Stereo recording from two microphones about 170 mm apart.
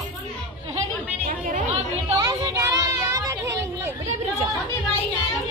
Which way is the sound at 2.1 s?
20° right (ahead or behind).